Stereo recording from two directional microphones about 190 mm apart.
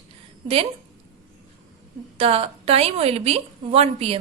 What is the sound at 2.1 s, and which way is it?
A woman's voice, 30° right (ahead or behind).